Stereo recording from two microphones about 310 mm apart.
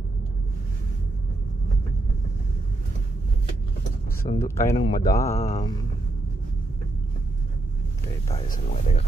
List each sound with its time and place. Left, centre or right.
4.3 s speech: centre
8.3 s speech: left